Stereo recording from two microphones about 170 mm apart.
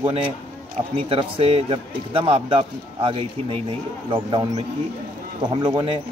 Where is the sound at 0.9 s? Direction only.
35° right (ahead or behind).